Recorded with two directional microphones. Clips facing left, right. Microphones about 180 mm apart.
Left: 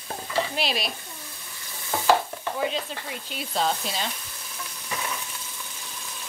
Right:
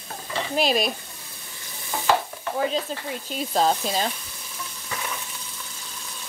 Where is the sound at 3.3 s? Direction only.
40° right (ahead or behind).